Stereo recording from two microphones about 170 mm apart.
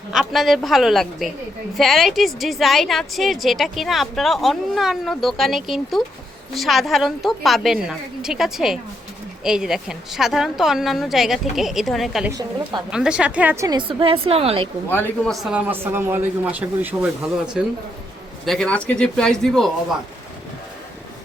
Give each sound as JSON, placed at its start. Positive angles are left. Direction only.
{"t": 0.1, "sound": "a woman's voice", "side_deg": 0}
{"t": 12.3, "sound": "a woman's voice", "side_deg": -25}
{"t": 12.9, "sound": "speech", "side_deg": -5}
{"t": 13.7, "sound": "a woman's voice", "side_deg": -30}
{"t": 14.8, "sound": "speech", "side_deg": 10}
{"t": 15.3, "sound": "speech", "side_deg": -5}
{"t": 18.4, "sound": "a woman's voice", "side_deg": 5}